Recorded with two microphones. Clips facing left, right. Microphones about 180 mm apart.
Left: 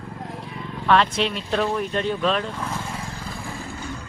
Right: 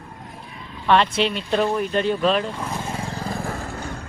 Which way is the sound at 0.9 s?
Centre (ahead or behind).